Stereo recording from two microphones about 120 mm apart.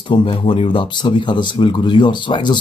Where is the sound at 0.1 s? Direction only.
45° left (ahead or behind).